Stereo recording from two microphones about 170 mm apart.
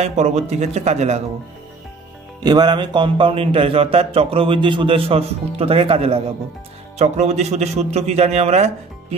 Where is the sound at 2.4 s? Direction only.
25° right (ahead or behind).